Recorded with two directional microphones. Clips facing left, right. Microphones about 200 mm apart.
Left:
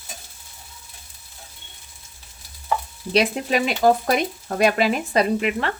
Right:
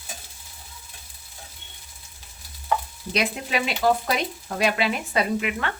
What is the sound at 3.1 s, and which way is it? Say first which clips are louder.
Speech: left 6 dB; 40° left (ahead or behind).